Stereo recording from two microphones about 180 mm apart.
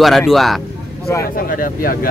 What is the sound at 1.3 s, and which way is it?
Speech, 50° left (ahead or behind).